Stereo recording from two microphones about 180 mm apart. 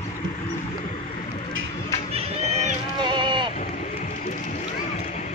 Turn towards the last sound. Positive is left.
turn(degrees=-25)  # may be behind; listen again after turning